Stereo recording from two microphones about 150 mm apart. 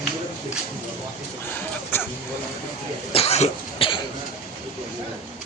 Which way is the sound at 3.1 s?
45° left (ahead or behind).